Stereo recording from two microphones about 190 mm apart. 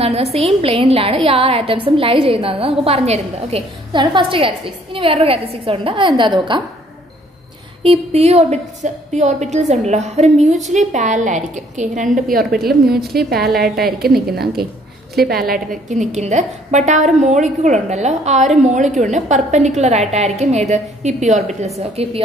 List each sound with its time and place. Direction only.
0.0 s a woman's voice: 30° right (ahead or behind)
7.8 s a woman's voice: 30° right (ahead or behind)
12.4 s a woman's voice: 50° right (ahead or behind); by 22.2 s 30° right (ahead or behind)